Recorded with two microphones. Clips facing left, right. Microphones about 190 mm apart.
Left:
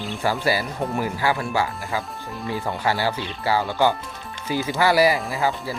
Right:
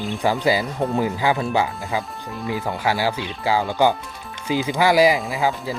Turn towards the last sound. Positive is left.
turn(degrees=-15)  # may be behind; listen again after turning